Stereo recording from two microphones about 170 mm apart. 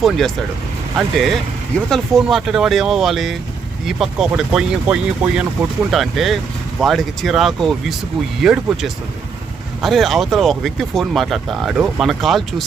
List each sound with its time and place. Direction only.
0.0 s speech: centre (ahead or behind)